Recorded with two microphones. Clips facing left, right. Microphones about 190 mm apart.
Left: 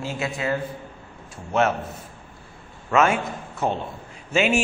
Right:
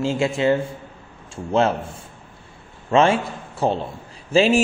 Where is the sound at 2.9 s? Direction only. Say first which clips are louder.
Right 3 dB; 30° right (ahead or behind).